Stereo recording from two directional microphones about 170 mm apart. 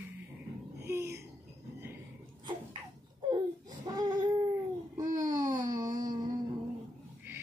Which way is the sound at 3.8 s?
25° right (ahead or behind).